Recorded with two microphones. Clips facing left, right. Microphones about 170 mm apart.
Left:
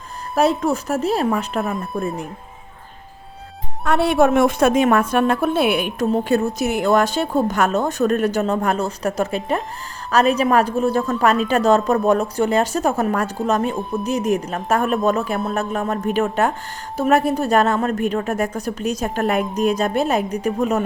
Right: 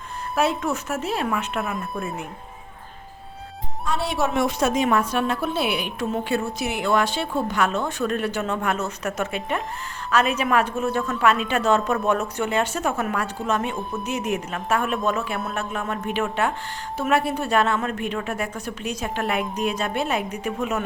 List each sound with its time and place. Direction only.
0.3 s a woman's voice: 35° left (ahead or behind)
3.8 s a woman's voice: 60° left (ahead or behind); by 20.8 s 35° left (ahead or behind)